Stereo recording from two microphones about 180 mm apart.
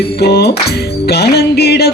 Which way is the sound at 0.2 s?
65° left (ahead or behind).